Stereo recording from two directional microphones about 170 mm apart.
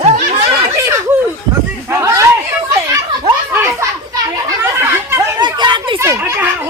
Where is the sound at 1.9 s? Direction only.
15° right (ahead or behind).